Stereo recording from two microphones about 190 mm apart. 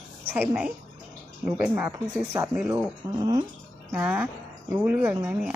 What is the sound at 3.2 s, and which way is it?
Speech, 20° right (ahead or behind).